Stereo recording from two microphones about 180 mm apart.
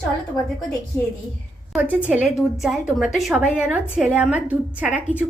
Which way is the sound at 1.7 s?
5° right (ahead or behind).